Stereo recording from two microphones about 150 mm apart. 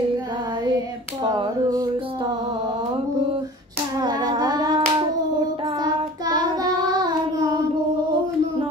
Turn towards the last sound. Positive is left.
turn(degrees=-25)  # may be behind; listen again after turning